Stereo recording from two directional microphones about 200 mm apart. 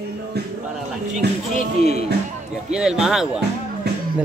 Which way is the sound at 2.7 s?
5° right (ahead or behind).